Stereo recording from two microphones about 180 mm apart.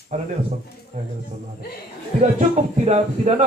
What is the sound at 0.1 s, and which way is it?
Speech, 40° right (ahead or behind).